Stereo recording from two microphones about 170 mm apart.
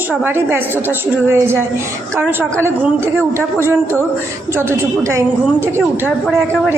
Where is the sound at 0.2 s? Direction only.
10° right (ahead or behind).